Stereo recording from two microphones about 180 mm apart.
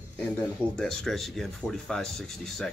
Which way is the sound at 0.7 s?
Centre (ahead or behind).